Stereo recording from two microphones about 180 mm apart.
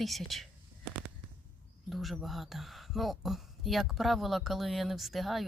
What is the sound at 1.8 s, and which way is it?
Speech, centre (ahead or behind).